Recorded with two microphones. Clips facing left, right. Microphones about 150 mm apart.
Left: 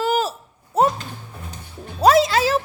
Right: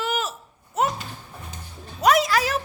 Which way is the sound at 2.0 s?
30° left (ahead or behind).